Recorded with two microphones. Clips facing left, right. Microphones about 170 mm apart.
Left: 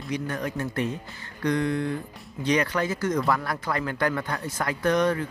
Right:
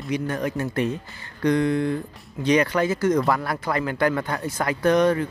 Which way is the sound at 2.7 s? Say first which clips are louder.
Right 5 dB; 25° right (ahead or behind).